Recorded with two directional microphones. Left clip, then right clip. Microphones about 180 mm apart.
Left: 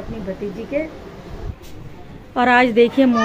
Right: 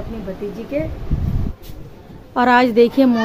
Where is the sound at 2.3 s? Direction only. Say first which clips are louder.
Right 1 dB; 15° right (ahead or behind).